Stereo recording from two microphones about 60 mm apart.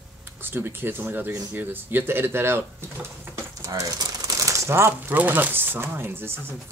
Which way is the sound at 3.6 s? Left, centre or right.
Right.